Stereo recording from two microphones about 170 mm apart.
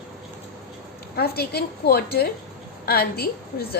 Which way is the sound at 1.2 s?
65° left (ahead or behind).